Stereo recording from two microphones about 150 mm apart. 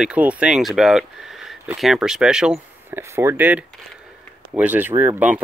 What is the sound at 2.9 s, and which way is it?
Speech, 15° right (ahead or behind).